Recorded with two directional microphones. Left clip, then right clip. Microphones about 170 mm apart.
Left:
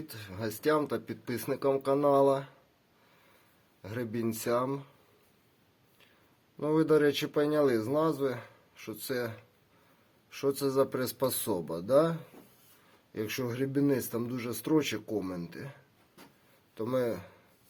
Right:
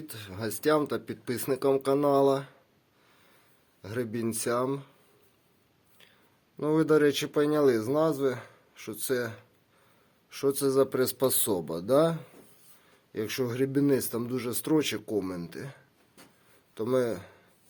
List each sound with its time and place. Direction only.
0.1 s speech: 30° right (ahead or behind)
3.8 s speech: 25° right (ahead or behind)
6.6 s speech: 30° right (ahead or behind)